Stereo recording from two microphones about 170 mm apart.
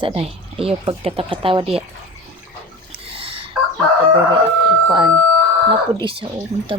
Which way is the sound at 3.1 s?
35° right (ahead or behind).